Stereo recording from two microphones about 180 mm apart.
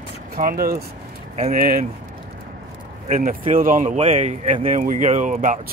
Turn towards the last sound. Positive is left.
turn(degrees=-45)  # may be behind; listen again after turning